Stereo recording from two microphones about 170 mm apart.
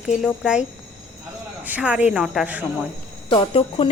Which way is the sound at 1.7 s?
10° right (ahead or behind).